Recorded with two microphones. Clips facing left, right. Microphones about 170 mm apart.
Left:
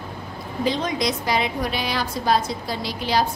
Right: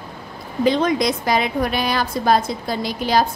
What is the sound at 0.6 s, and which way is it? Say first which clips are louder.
A woman's voice: right 6 dB; 55° right (ahead or behind).